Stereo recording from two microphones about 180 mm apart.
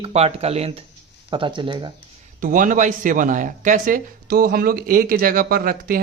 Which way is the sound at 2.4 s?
45° right (ahead or behind).